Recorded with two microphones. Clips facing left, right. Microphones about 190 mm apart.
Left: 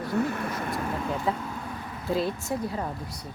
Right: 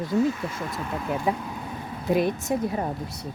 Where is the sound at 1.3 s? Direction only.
15° right (ahead or behind).